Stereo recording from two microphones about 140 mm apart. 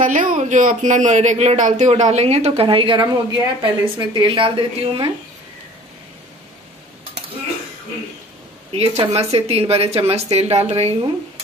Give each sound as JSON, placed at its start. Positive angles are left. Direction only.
{"t": 0.0, "sound": "a man's voice", "side_deg": -70}
{"t": 8.7, "sound": "a woman's voice", "side_deg": -45}